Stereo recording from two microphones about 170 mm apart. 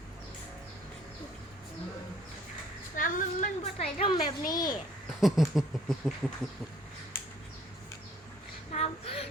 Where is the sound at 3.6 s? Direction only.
40° left (ahead or behind); by 4.7 s 25° left (ahead or behind).